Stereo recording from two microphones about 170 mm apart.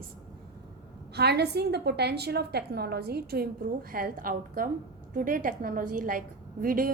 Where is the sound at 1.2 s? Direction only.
75° right (ahead or behind).